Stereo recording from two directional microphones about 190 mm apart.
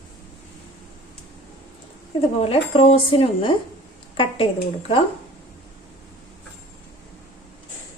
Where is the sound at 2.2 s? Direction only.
30° left (ahead or behind).